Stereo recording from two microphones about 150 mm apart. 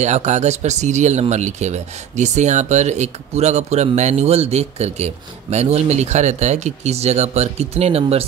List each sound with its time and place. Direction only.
0.0 s speech: 50° right (ahead or behind)